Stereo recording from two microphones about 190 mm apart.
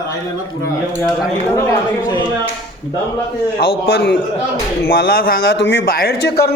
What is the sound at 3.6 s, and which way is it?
A man's voice, 55° left (ahead or behind).